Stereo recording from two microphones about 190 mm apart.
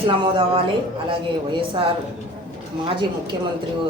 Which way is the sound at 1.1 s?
25° right (ahead or behind).